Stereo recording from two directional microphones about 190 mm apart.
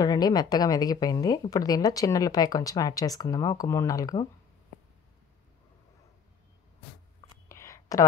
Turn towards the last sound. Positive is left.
turn(degrees=15)  # may be behind; listen again after turning